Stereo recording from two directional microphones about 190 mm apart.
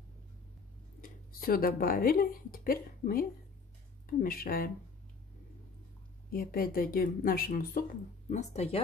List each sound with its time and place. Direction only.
1.0 s speech: 50° left (ahead or behind)
6.3 s speech: 50° left (ahead or behind)
8.3 s speech: 35° left (ahead or behind)